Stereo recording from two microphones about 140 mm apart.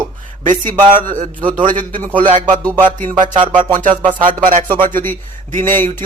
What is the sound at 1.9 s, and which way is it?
Speech, 35° right (ahead or behind).